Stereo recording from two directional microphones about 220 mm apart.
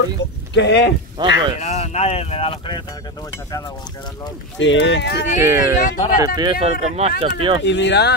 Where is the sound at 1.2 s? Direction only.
20° right (ahead or behind).